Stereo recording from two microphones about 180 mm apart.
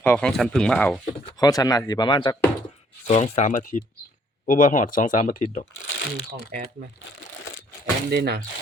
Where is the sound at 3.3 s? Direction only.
45° left (ahead or behind).